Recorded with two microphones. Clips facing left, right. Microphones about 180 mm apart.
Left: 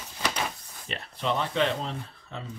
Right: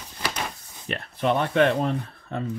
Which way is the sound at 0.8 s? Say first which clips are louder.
Right 6 dB; 55° right (ahead or behind).